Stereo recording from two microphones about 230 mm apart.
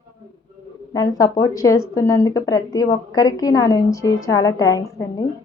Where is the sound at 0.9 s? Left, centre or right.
Centre.